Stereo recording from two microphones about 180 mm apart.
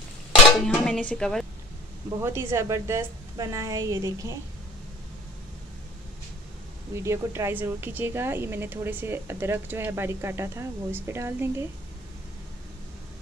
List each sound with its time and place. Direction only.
0.5 s speech: 5° left (ahead or behind)
2.0 s a woman's voice: 15° right (ahead or behind)
7.0 s a woman's voice: 15° right (ahead or behind)